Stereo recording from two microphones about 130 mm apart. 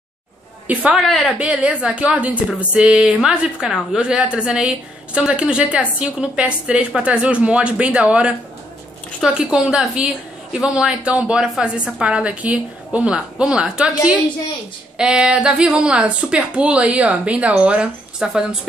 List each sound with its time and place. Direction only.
0.7 s speech: 10° right (ahead or behind)
1.0 s a woman's voice: 5° left (ahead or behind)
1.4 s speech: 10° right (ahead or behind)
15.0 s speech: 5° right (ahead or behind)